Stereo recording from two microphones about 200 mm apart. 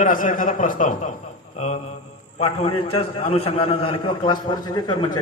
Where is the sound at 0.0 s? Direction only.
40° left (ahead or behind).